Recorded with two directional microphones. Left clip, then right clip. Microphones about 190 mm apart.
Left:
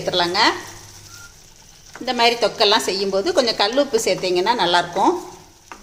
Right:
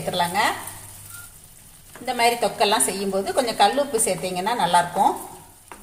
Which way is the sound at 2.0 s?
35° left (ahead or behind).